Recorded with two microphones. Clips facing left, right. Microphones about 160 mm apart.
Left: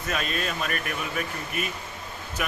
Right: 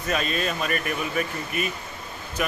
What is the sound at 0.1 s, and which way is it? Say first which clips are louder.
A man's voice: right 4 dB; centre (ahead or behind).